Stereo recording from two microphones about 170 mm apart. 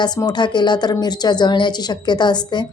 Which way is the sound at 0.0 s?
25° left (ahead or behind).